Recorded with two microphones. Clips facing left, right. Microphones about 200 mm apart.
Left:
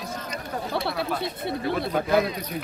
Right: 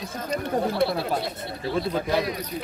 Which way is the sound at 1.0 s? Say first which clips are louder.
Even; 55° left (ahead or behind).